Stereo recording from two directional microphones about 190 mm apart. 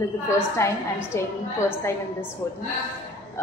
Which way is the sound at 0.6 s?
15° left (ahead or behind).